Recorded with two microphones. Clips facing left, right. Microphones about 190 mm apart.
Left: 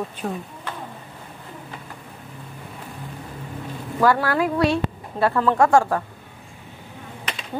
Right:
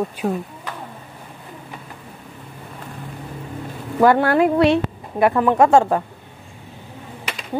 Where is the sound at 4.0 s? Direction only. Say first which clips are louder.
Right 5 dB; 25° right (ahead or behind).